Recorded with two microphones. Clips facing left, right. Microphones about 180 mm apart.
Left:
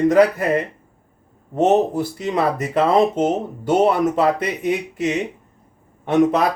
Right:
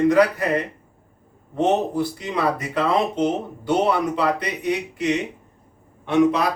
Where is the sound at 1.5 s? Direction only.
45° left (ahead or behind).